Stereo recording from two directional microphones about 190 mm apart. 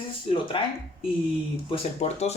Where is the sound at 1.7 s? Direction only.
35° left (ahead or behind).